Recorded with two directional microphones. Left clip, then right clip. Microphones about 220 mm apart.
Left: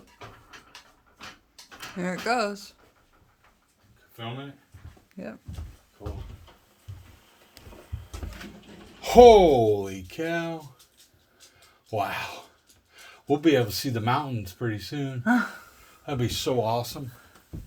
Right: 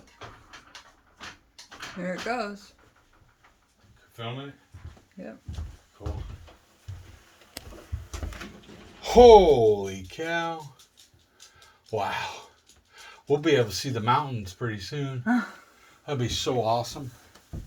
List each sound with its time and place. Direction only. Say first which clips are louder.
2.0 s speech: left 4 dB; 45° left (ahead or behind)
9.0 s speech: even; 50° left (ahead or behind)
11.9 s speech: even; 45° left (ahead or behind)